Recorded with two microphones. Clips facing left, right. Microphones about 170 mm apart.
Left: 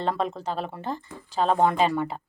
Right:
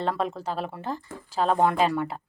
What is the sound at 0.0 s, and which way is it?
A woman's voice, 5° right (ahead or behind).